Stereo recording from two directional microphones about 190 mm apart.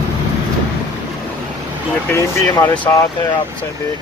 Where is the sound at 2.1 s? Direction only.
15° left (ahead or behind).